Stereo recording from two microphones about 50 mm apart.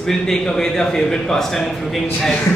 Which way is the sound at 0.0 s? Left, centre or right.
Centre.